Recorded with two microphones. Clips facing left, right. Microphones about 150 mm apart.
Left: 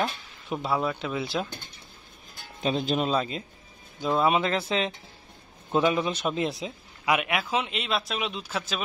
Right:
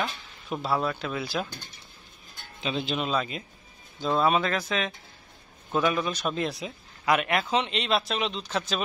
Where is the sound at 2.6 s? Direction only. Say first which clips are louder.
Left 4 dB; 40° left (ahead or behind).